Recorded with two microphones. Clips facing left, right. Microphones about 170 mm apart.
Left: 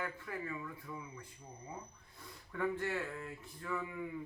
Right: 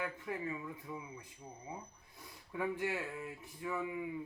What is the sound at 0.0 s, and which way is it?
Speech, 20° right (ahead or behind).